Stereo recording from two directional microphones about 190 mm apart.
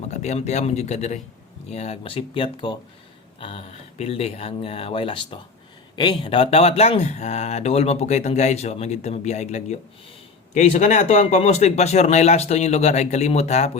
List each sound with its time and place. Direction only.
0.1 s speech: 35° left (ahead or behind)